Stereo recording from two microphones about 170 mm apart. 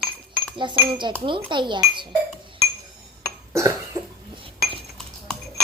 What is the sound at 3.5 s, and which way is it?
Cough, 15° right (ahead or behind).